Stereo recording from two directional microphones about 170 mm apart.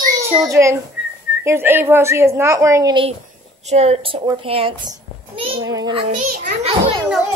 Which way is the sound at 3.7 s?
40° right (ahead or behind).